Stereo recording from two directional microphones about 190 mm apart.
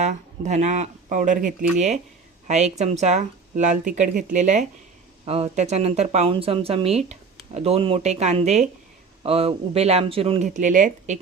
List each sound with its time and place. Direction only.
0.0 s speech: 40° right (ahead or behind)